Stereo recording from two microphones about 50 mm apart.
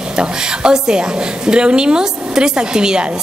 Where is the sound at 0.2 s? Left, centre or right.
Centre.